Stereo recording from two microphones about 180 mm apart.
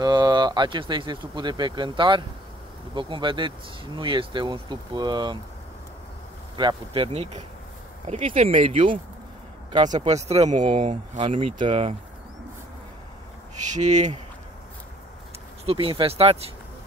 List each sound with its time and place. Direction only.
0.0 s speech: 25° right (ahead or behind)
6.5 s speech: 25° right (ahead or behind)
10.0 s speech: 35° right (ahead or behind)
13.6 s speech: 40° right (ahead or behind)
15.6 s speech: 30° right (ahead or behind)